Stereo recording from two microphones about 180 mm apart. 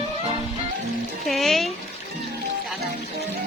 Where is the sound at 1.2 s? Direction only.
Centre (ahead or behind).